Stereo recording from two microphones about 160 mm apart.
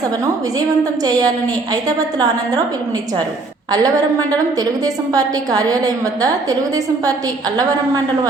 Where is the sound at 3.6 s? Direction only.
25° right (ahead or behind).